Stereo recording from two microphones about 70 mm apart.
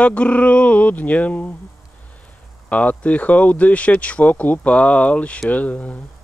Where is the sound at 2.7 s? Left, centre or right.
Left.